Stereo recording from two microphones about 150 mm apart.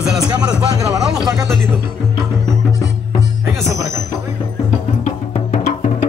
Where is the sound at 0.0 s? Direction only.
5° right (ahead or behind).